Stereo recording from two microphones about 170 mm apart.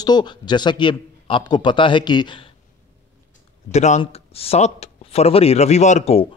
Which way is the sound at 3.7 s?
40° left (ahead or behind).